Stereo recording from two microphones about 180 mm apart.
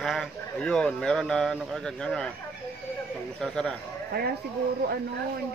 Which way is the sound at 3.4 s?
5° left (ahead or behind).